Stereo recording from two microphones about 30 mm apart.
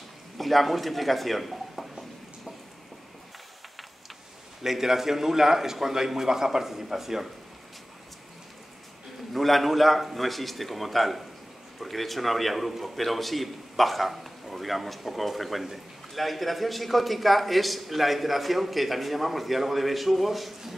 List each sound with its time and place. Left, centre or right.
0.4 s speech: centre
4.6 s a man's voice: centre
9.3 s a man's voice: centre